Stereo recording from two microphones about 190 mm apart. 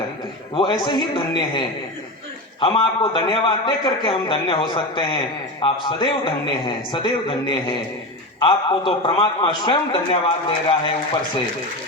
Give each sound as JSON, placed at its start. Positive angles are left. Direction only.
{"t": 0.5, "sound": "a man's voice", "side_deg": 25}